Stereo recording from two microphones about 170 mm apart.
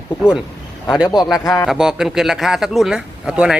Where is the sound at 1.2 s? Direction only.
20° left (ahead or behind).